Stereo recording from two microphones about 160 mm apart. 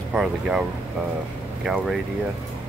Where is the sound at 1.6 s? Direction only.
Centre (ahead or behind).